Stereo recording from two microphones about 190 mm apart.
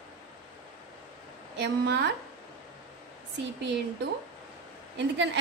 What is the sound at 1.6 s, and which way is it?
Speech, 65° right (ahead or behind).